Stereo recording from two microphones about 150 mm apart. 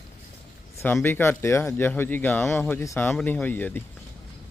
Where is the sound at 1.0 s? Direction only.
15° left (ahead or behind).